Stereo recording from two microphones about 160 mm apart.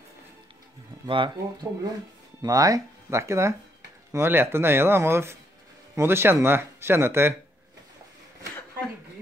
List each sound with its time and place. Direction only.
1.0 s speech: 30° right (ahead or behind)
2.4 s speech: 20° right (ahead or behind)